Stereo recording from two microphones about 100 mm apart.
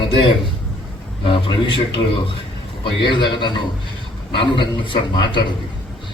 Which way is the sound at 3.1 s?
50° left (ahead or behind).